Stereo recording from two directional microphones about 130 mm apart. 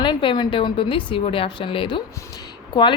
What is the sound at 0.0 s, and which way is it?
A woman's voice, 40° left (ahead or behind).